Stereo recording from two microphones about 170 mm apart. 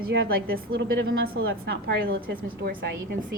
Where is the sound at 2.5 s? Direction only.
65° right (ahead or behind).